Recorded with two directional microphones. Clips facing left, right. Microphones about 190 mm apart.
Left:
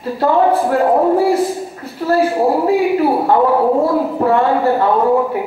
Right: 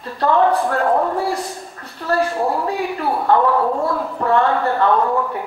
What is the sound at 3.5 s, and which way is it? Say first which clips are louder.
Speech: left 6 dB; 30° left (ahead or behind).